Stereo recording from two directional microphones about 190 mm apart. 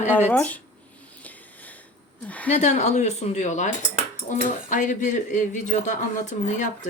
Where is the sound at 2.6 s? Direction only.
40° left (ahead or behind).